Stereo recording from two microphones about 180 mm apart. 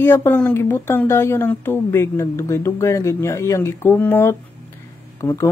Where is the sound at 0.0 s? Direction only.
10° left (ahead or behind).